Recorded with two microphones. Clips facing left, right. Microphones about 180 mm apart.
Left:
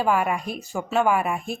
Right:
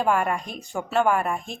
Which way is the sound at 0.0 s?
5° left (ahead or behind).